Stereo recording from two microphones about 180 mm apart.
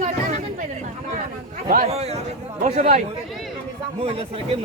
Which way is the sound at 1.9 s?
35° right (ahead or behind).